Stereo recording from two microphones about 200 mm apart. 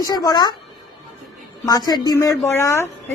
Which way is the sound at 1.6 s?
20° left (ahead or behind).